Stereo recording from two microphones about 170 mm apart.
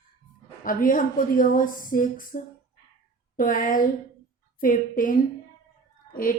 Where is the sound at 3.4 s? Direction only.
55° left (ahead or behind).